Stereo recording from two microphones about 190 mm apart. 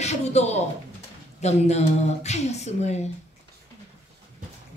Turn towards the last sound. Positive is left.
turn(degrees=35)  # may be behind; listen again after turning